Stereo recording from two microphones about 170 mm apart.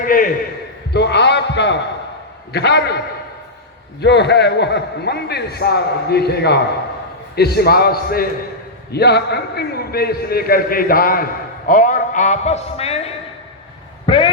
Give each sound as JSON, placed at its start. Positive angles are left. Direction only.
{"t": 0.0, "sound": "a sound", "side_deg": 55}
{"t": 0.9, "sound": "a sound", "side_deg": 90}
{"t": 2.5, "sound": "a man's voice", "side_deg": 75}
{"t": 4.0, "sound": "a man's voice", "side_deg": 80}
{"t": 8.9, "sound": "a man's voice", "side_deg": 75}
{"t": 14.1, "sound": "a man's voice", "side_deg": 30}